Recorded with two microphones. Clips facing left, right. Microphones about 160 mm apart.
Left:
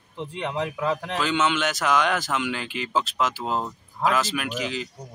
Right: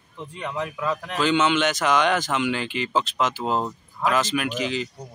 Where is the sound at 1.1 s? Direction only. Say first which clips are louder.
Right 6 dB; centre (ahead or behind).